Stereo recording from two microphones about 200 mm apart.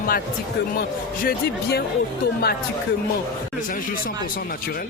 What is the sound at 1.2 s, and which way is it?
Speech, 55° left (ahead or behind).